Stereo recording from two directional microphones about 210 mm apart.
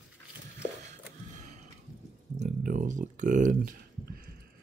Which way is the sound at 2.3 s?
40° right (ahead or behind).